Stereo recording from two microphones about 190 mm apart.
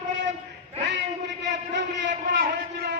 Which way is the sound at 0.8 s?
70° right (ahead or behind).